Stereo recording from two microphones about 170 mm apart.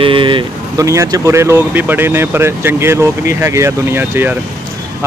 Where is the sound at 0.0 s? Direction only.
30° right (ahead or behind).